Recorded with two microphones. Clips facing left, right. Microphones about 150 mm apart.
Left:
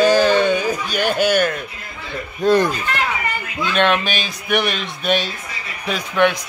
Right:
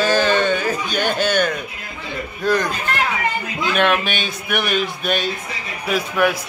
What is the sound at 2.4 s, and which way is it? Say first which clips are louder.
Speech: left 4 dB; 25° left (ahead or behind).